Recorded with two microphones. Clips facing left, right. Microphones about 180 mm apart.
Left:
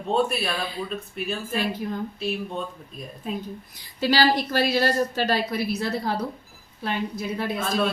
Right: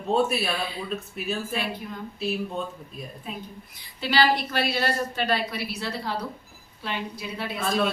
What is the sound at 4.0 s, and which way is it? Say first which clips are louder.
A woman's voice: left 2 dB; 40° left (ahead or behind).